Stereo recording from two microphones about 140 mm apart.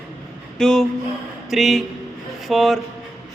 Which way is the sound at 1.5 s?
Centre (ahead or behind).